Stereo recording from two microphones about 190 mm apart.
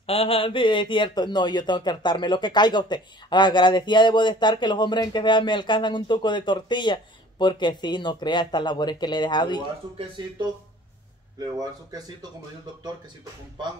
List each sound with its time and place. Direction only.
0.0 s speech: 30° left (ahead or behind)
11.3 s speech: 20° right (ahead or behind)